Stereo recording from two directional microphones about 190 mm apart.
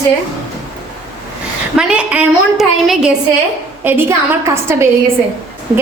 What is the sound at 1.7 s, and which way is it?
A woman's voice, 5° right (ahead or behind).